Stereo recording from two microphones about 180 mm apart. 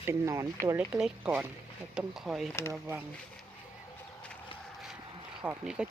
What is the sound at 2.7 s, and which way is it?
Speech, 15° right (ahead or behind).